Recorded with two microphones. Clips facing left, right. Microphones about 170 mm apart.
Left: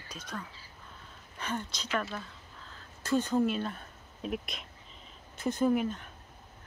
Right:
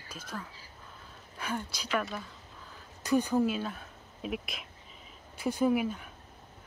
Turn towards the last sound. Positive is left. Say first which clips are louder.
# even
turn(degrees=-5)  # may be behind; listen again after turning